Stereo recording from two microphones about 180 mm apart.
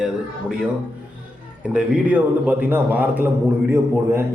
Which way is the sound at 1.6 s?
5° right (ahead or behind).